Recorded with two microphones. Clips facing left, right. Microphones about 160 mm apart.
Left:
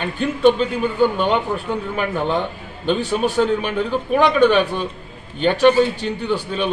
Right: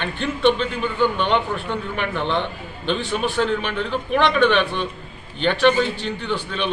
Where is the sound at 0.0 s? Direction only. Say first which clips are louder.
Left 4 dB; 40° left (ahead or behind).